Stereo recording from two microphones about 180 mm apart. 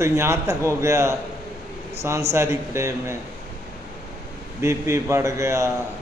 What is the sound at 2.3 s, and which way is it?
Speech, 15° right (ahead or behind).